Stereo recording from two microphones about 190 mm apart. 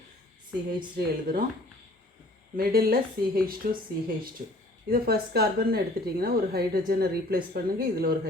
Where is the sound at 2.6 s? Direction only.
50° right (ahead or behind).